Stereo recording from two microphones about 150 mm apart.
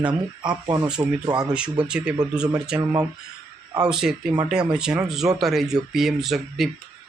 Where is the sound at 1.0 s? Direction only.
20° right (ahead or behind).